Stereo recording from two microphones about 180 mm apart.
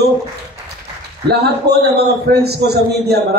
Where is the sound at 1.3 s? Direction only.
65° right (ahead or behind).